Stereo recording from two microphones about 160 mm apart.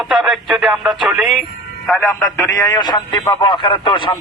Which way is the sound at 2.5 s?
25° left (ahead or behind).